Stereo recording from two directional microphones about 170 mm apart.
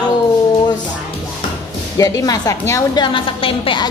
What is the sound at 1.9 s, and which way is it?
A woman's voice, 20° left (ahead or behind).